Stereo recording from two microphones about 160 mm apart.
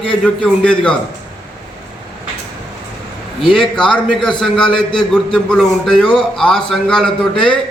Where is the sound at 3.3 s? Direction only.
Centre (ahead or behind).